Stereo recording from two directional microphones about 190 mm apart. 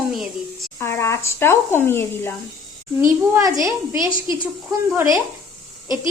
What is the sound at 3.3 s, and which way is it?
A woman's voice, 15° right (ahead or behind).